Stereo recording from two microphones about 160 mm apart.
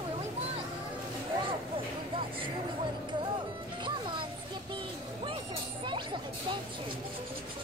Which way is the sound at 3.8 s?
30° right (ahead or behind).